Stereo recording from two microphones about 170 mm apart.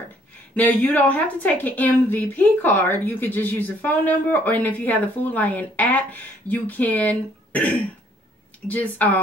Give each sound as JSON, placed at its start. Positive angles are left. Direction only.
{"t": 0.6, "sound": "a woman's voice", "side_deg": 10}